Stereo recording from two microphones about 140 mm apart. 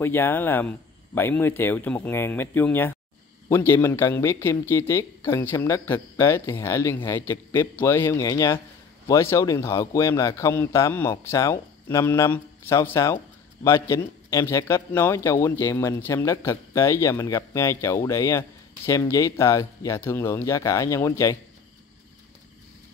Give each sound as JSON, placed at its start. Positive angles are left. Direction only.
{"t": 0.0, "sound": "speech", "side_deg": 15}